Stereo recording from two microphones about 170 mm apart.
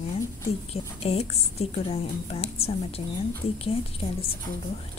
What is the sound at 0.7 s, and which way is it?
A woman's voice, 35° left (ahead or behind).